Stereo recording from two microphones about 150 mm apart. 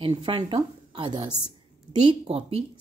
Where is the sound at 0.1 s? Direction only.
30° right (ahead or behind).